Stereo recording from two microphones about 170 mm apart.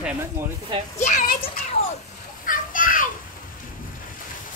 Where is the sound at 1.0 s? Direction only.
50° left (ahead or behind).